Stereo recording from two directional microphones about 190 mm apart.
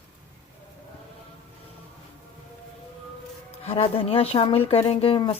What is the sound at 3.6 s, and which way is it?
Speech, 30° left (ahead or behind).